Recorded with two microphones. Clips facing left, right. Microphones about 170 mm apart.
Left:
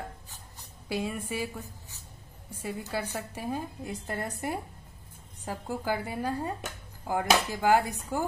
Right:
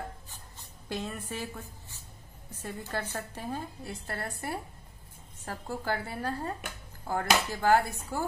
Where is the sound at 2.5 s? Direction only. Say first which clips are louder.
Left 3 dB; 10° left (ahead or behind).